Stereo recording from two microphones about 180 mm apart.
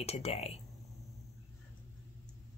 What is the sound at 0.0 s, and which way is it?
Speech, 35° left (ahead or behind).